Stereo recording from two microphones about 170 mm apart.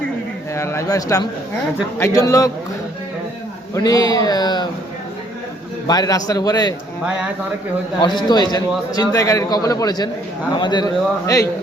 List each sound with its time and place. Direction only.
0.5 s a man's voice: 15° left (ahead or behind)
3.8 s a man's voice: 20° left (ahead or behind)
5.9 s a man's voice: 20° left (ahead or behind)
7.0 s speech: 5° right (ahead or behind)
8.0 s a man's voice: 25° left (ahead or behind)